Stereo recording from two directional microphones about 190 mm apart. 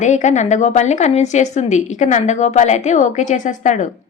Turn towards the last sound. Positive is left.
turn(degrees=40)  # may be behind; listen again after turning